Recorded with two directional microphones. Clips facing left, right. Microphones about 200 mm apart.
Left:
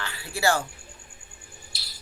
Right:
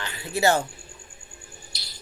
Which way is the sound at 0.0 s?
20° right (ahead or behind).